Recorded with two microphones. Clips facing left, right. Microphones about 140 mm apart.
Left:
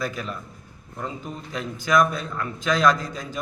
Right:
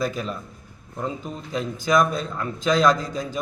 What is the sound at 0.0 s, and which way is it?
Speech, 20° right (ahead or behind).